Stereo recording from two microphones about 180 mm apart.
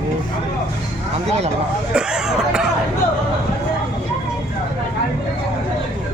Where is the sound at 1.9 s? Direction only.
5° right (ahead or behind).